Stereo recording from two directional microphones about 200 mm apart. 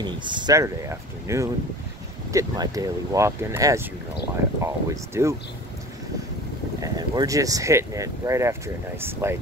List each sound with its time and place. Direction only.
0.0 s speech: 20° right (ahead or behind)
6.8 s speech: 20° right (ahead or behind)